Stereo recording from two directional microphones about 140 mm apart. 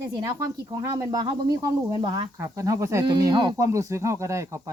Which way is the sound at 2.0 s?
35° right (ahead or behind).